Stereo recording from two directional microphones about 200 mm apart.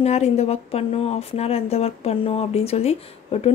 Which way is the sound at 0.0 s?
30° left (ahead or behind).